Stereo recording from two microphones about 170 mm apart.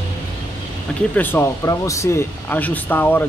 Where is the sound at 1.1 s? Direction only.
10° left (ahead or behind).